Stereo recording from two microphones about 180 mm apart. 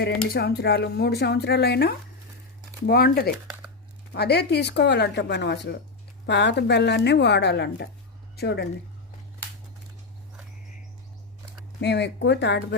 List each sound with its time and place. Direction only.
0.0 s speech: 60° left (ahead or behind)
11.8 s speech: 70° left (ahead or behind)